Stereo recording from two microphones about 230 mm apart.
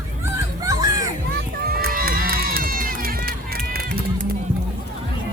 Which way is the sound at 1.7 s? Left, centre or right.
Right.